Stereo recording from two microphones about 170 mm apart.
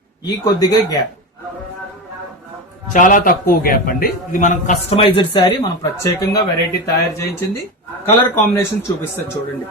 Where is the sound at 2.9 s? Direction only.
50° left (ahead or behind); by 6.1 s 25° left (ahead or behind).